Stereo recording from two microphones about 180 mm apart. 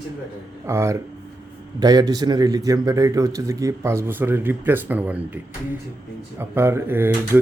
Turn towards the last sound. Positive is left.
turn(degrees=-10)  # may be behind; listen again after turning